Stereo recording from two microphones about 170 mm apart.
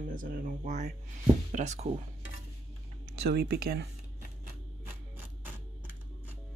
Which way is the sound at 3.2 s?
70° right (ahead or behind).